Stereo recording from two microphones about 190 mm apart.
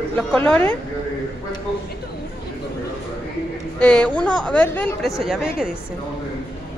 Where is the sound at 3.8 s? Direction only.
5° left (ahead or behind).